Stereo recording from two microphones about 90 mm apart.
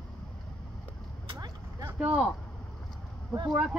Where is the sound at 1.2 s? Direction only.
50° right (ahead or behind).